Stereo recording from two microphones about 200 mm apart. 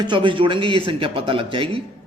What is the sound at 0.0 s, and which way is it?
A woman's voice, 25° right (ahead or behind).